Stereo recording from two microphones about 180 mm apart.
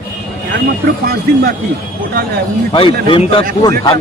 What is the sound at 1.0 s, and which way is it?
Speech, 60° right (ahead or behind).